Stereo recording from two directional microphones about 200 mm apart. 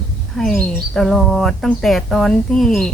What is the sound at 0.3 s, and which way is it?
Speech, centre (ahead or behind).